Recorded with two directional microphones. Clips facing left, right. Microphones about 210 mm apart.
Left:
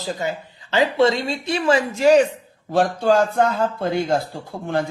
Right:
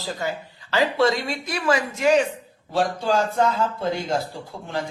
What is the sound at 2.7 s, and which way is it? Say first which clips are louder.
Speech: left 5 dB; 55° left (ahead or behind).